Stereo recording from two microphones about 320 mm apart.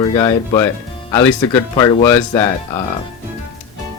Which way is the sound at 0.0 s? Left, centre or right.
Centre.